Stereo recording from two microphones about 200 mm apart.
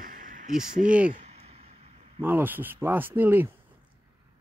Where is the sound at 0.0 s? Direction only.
40° right (ahead or behind).